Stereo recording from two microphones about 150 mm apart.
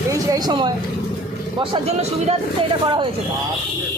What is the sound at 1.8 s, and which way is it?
Speech, 45° right (ahead or behind).